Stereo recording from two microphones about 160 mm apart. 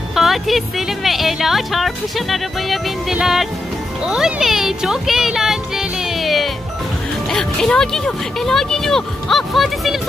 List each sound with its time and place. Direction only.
0.1 s speech: centre (ahead or behind)